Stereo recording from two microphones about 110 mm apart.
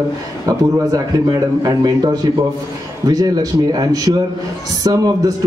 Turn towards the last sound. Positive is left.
turn(degrees=-35)  # may be behind; listen again after turning